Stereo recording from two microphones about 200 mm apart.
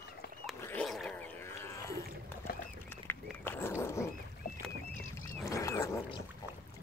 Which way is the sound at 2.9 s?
10° left (ahead or behind).